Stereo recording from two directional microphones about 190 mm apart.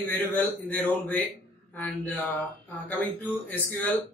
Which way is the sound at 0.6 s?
5° left (ahead or behind).